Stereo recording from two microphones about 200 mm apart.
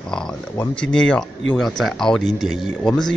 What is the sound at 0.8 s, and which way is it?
Speech, 5° left (ahead or behind).